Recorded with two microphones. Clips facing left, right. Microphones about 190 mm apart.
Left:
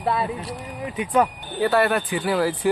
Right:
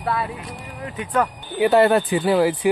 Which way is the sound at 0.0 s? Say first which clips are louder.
Left 1 dB; 20° left (ahead or behind).